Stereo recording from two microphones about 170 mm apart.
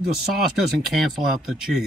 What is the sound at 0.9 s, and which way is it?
Speech, centre (ahead or behind).